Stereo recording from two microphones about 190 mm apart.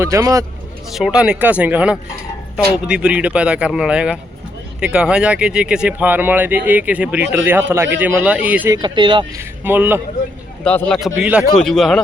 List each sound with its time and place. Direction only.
0.0 s speech: 15° right (ahead or behind)
0.9 s speech: centre (ahead or behind)
8.8 s speech: 25° right (ahead or behind)
9.4 s speech: 10° right (ahead or behind)
10.6 s speech: 5° left (ahead or behind)